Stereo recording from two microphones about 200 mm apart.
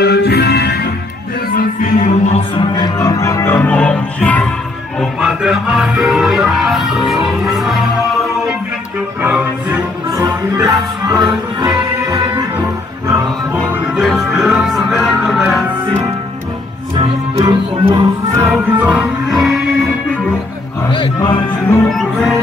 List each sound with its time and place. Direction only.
0.0 s music: 55° left (ahead or behind)
1.5 s music: 40° left (ahead or behind)
2.5 s music: 20° left (ahead or behind); by 12.6 s 15° right (ahead or behind)
13.9 s music: centre (ahead or behind)
16.9 s music: 25° right (ahead or behind); by 20.3 s centre (ahead or behind)
20.9 s music: 25° left (ahead or behind)
21.8 s music: centre (ahead or behind)